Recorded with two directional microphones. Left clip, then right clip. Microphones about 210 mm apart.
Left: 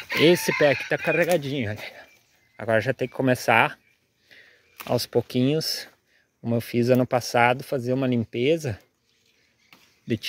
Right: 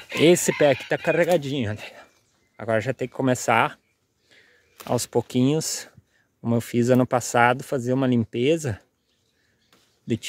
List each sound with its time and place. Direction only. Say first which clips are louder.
0.2 s speech: right 1 dB; 25° right (ahead or behind)
2.5 s speech: left 1 dB; 10° right (ahead or behind)